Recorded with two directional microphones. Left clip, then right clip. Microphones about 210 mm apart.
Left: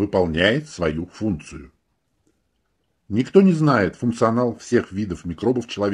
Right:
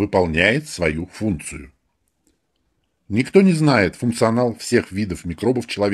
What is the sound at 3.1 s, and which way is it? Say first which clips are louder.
Speech: right 1 dB; 30° right (ahead or behind).